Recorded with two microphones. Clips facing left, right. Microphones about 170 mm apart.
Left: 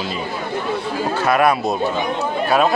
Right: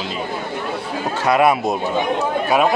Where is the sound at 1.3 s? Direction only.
20° right (ahead or behind).